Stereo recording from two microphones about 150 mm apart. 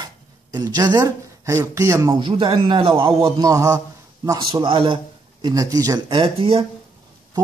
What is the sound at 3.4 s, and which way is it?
A man's voice, 20° right (ahead or behind).